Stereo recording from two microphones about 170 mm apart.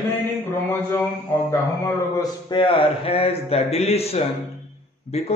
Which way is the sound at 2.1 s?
30° left (ahead or behind).